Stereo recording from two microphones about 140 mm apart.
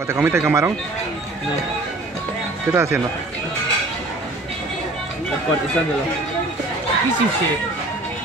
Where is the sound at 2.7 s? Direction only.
20° right (ahead or behind).